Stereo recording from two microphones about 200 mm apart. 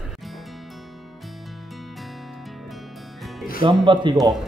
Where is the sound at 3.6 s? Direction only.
25° right (ahead or behind).